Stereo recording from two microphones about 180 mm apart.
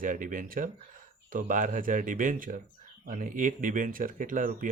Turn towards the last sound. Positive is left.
turn(degrees=-45)  # may be behind; listen again after turning